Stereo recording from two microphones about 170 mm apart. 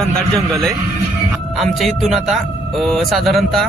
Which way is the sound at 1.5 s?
Centre (ahead or behind).